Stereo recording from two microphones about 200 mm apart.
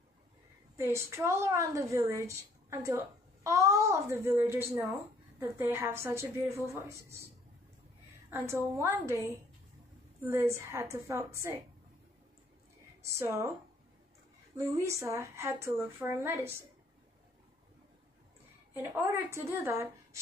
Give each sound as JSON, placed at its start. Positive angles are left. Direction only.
{"t": 0.7, "sound": "a woman's voice", "side_deg": -10}
{"t": 8.3, "sound": "a woman's voice", "side_deg": -15}
{"t": 13.0, "sound": "a woman's voice", "side_deg": -15}
{"t": 14.6, "sound": "a woman's voice", "side_deg": -15}
{"t": 18.8, "sound": "a woman's voice", "side_deg": -15}